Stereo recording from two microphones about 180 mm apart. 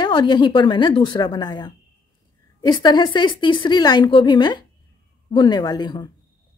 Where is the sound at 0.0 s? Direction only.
25° left (ahead or behind).